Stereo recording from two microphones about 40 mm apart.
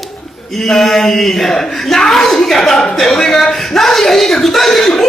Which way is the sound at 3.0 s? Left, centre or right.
Centre.